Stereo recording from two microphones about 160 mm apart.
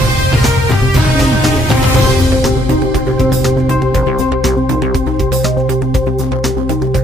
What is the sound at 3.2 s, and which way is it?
Music, centre (ahead or behind).